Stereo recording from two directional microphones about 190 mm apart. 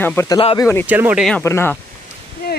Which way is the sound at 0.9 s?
10° right (ahead or behind).